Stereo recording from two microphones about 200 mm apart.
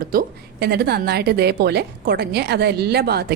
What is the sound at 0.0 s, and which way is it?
A woman's voice, 45° right (ahead or behind).